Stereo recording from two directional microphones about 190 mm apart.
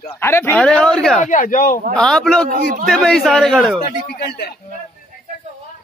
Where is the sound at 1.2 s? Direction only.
40° left (ahead or behind).